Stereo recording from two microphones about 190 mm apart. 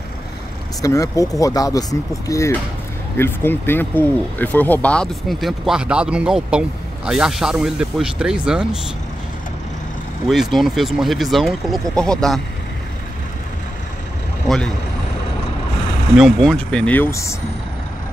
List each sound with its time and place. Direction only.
0.8 s speech: 15° left (ahead or behind); by 8.6 s 5° right (ahead or behind)
10.2 s speech: centre (ahead or behind)
14.5 s speech: centre (ahead or behind)
16.2 s speech: centre (ahead or behind); by 17.4 s 15° left (ahead or behind)